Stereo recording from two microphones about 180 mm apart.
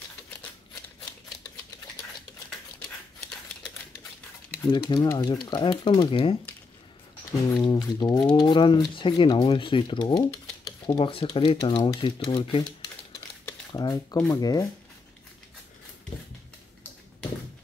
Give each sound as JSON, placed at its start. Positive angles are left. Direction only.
{"t": 4.6, "sound": "speech", "side_deg": 25}
{"t": 7.5, "sound": "speech", "side_deg": 25}
{"t": 13.5, "sound": "a sound", "side_deg": 20}
{"t": 14.3, "sound": "speech", "side_deg": 20}